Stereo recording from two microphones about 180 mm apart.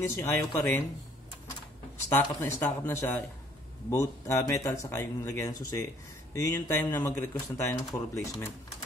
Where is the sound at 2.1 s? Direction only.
10° left (ahead or behind).